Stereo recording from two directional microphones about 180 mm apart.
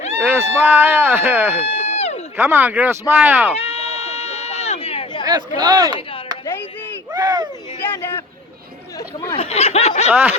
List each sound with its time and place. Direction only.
0.2 s speech: 10° right (ahead or behind)
1.6 s a sound: 35° left (ahead or behind)
2.3 s speech: 10° right (ahead or behind)
3.6 s sheep: 35° left (ahead or behind)
5.5 s speech: 20° right (ahead or behind)
7.1 s a sound: 20° right (ahead or behind)
9.3 s snicker: 35° left (ahead or behind)
10.1 s speech: 10° right (ahead or behind)